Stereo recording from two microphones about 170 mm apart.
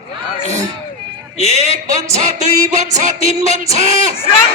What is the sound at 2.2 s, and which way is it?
Music, 45° right (ahead or behind).